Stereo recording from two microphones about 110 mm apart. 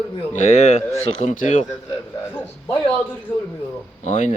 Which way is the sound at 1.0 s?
90° left.